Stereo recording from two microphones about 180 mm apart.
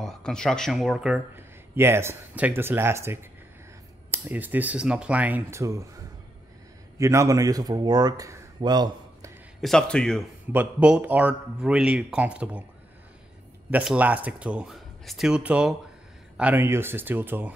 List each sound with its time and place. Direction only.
0.0 s speech: 5° left (ahead or behind); by 3.2 s 15° right (ahead or behind)
4.3 s speech: 10° right (ahead or behind)
7.0 s a man's voice: 15° right (ahead or behind)
9.6 s a man's voice: 5° left (ahead or behind)
10.5 s speech: 10° right (ahead or behind)
13.7 s speech: 10° right (ahead or behind)